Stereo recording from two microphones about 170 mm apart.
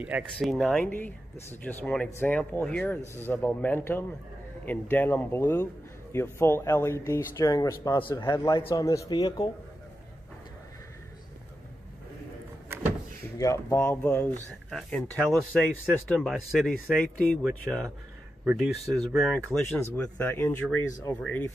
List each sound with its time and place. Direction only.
0.2 s speech: 5° left (ahead or behind); by 9.5 s 25° left (ahead or behind)
13.4 s speech: 20° left (ahead or behind); by 17.8 s 5° left (ahead or behind)
18.4 s speech: 5° right (ahead or behind)
19.7 s speech: 10° left (ahead or behind)